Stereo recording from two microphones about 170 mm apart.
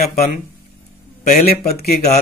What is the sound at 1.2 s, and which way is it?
Speech, 55° left (ahead or behind).